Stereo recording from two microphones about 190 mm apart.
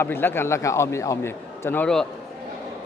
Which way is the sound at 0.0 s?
10° left (ahead or behind).